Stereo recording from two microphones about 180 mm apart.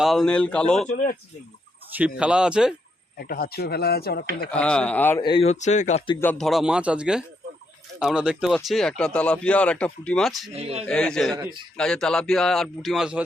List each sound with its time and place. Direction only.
0.0 s speech: centre (ahead or behind)
1.9 s speech: 5° right (ahead or behind)
3.2 s speech: 55° left (ahead or behind)
4.5 s speech: 5° left (ahead or behind)
5.2 s speech: 30° left (ahead or behind)
6.1 s speech: 5° left (ahead or behind)
10.5 s speech: 35° right (ahead or behind)
10.8 s speech: 5° left (ahead or behind)